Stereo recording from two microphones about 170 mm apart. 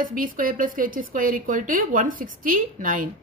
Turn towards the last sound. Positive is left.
turn(degrees=-50)  # may be behind; listen again after turning